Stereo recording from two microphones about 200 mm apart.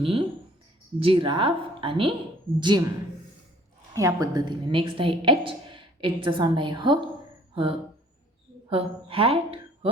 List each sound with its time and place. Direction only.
0.0 s a woman's voice: 25° right (ahead or behind)
3.9 s a woman's voice: 15° right (ahead or behind)